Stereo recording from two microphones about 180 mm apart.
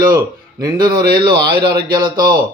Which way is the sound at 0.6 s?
20° right (ahead or behind).